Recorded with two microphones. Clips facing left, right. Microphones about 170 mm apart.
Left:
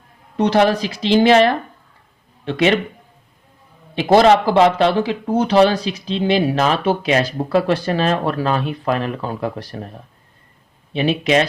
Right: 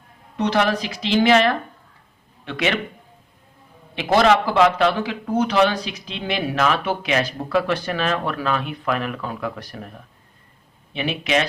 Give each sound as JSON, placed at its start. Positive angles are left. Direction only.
{"t": 0.3, "sound": "speech", "side_deg": 35}
{"t": 3.9, "sound": "speech", "side_deg": 35}
{"t": 10.9, "sound": "speech", "side_deg": 35}